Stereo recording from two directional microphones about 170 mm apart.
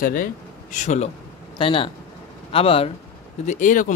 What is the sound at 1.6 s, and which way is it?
Speech, 30° left (ahead or behind).